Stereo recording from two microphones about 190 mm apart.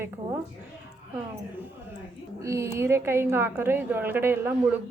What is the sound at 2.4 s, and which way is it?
A child's voice, 15° right (ahead or behind).